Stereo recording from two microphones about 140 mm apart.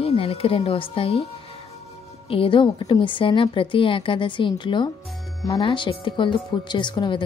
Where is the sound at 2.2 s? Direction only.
40° left (ahead or behind).